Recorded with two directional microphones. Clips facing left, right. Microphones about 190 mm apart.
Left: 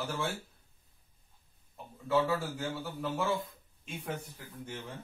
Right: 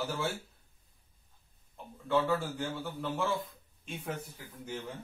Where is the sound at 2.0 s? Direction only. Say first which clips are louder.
Even; 5° left (ahead or behind).